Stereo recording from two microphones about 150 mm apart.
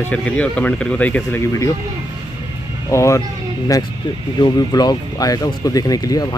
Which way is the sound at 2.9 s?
20° left (ahead or behind).